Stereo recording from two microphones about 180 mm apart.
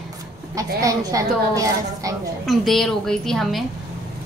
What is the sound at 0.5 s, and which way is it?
A woman's voice, 20° right (ahead or behind).